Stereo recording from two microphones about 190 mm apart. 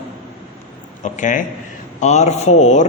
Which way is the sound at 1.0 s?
40° left (ahead or behind).